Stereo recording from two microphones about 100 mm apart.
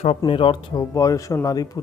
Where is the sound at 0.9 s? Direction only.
35° left (ahead or behind).